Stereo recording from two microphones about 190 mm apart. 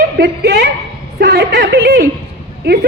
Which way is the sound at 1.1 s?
65° right (ahead or behind).